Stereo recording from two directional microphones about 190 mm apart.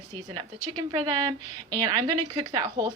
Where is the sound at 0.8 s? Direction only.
25° right (ahead or behind).